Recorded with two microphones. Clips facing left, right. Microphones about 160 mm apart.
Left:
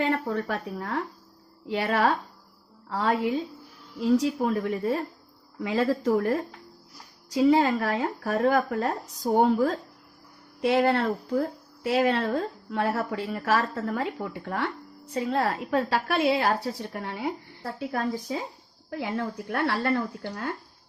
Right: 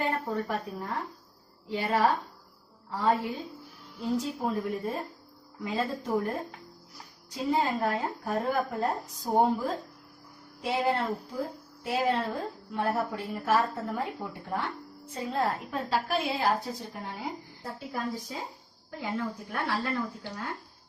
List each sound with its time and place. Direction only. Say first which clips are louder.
0.0 s a woman's voice: left 4 dB; 80° left
4.0 s a woman's voice: left 7 dB; 80° left
18.9 s a woman's voice: left 3 dB; 60° left (ahead or behind)